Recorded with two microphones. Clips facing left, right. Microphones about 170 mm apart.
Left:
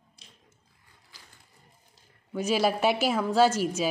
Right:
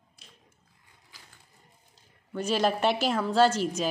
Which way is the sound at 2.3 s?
10° left (ahead or behind).